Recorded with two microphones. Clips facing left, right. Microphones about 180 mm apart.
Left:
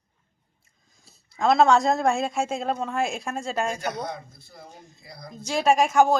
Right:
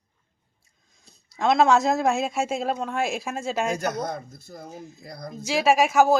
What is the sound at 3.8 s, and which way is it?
A man's voice, 45° right (ahead or behind).